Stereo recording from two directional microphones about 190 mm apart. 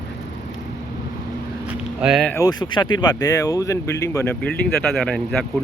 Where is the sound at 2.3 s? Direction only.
20° left (ahead or behind).